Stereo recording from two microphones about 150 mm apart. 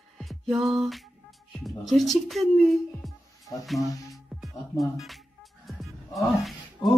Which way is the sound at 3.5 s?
25° left (ahead or behind).